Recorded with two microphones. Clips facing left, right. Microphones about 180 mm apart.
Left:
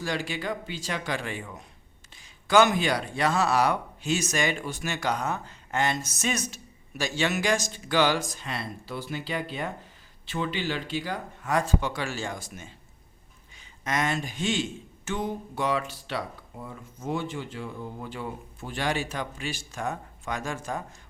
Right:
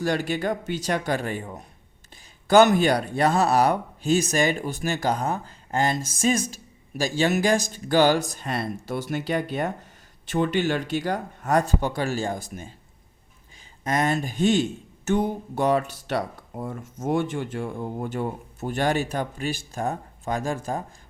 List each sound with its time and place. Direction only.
0.0 s speech: 45° right (ahead or behind)
13.8 s speech: 40° right (ahead or behind)